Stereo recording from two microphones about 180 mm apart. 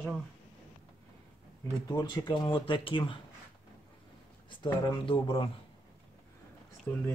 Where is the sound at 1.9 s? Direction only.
25° left (ahead or behind).